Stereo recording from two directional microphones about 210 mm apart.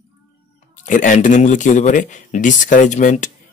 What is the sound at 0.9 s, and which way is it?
Speech, 35° left (ahead or behind).